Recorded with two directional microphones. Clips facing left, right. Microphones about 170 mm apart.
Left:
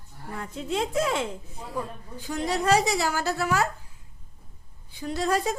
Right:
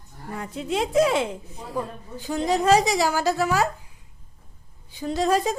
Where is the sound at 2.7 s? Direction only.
15° right (ahead or behind).